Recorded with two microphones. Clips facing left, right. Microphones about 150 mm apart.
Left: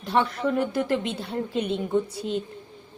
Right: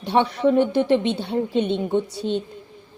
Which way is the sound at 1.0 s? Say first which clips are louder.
Right 6 dB; centre (ahead or behind).